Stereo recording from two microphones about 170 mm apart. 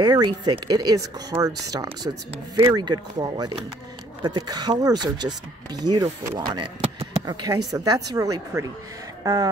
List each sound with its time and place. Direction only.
0.0 s speech: 25° right (ahead or behind)